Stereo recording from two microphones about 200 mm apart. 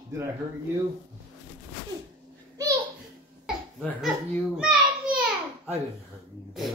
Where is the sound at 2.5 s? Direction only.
15° right (ahead or behind).